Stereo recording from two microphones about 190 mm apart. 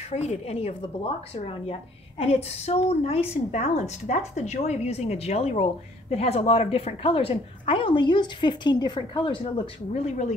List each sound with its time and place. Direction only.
0.1 s a woman's voice: 35° left (ahead or behind)